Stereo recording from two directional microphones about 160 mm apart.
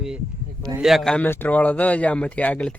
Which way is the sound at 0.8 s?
Centre (ahead or behind).